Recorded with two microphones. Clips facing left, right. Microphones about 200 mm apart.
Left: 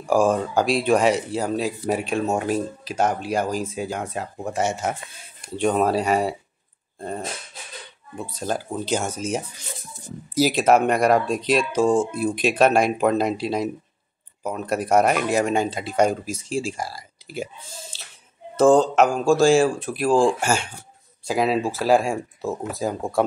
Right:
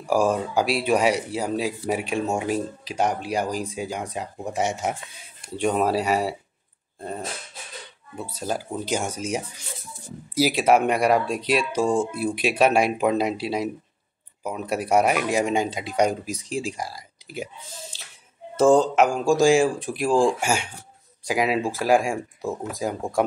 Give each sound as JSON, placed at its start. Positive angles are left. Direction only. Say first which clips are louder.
{"t": 0.1, "sound": "speech", "louder": "left 2 dB", "side_deg": -10}
{"t": 8.2, "sound": "speech", "louder": "left 1 dB", "side_deg": -5}
{"t": 17.9, "sound": "a sound", "louder": "left 2 dB", "side_deg": -15}
{"t": 18.6, "sound": "speech", "louder": "left 1 dB", "side_deg": -10}